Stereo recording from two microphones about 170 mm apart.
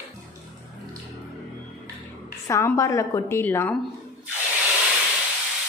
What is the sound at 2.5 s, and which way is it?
A woman's voice, 20° left (ahead or behind).